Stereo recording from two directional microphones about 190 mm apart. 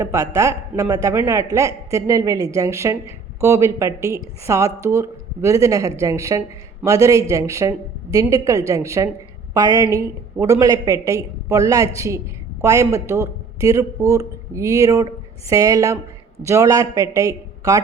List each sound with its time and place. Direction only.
0.0 s a man's voice: 15° right (ahead or behind)